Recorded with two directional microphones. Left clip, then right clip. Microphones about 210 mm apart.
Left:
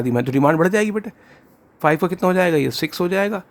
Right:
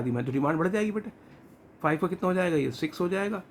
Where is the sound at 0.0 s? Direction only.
50° left (ahead or behind).